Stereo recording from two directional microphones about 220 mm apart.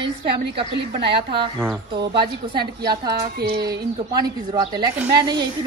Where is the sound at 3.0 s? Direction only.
45° right (ahead or behind).